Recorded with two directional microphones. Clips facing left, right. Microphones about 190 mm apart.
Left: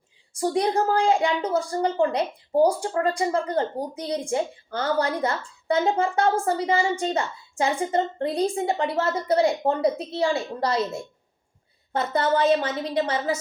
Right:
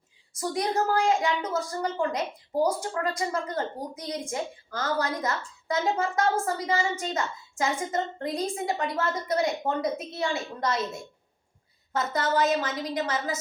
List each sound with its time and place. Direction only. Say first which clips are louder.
0.3 s a woman's voice: left 5 dB; 30° left (ahead or behind)
11.9 s a woman's voice: left 3 dB; 30° left (ahead or behind)